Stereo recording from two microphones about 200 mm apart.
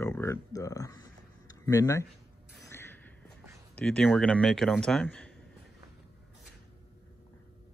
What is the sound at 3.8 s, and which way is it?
Speech, 5° left (ahead or behind).